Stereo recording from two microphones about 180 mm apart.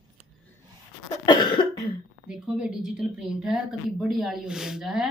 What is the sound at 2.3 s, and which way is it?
A woman's voice, 5° right (ahead or behind).